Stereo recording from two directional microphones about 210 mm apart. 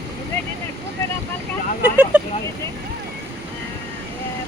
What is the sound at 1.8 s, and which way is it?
Speech, 5° right (ahead or behind).